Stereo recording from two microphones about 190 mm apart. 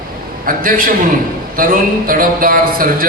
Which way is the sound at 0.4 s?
45° right (ahead or behind).